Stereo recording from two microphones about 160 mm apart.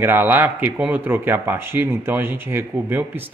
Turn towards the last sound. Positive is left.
turn(degrees=-15)  # may be behind; listen again after turning